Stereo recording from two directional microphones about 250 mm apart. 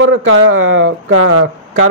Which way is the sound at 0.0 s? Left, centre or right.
Right.